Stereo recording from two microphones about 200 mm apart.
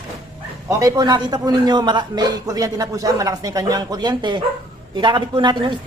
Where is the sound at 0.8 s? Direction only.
20° right (ahead or behind).